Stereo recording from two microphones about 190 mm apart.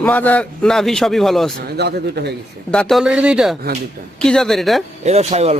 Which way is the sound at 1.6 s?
60° right (ahead or behind).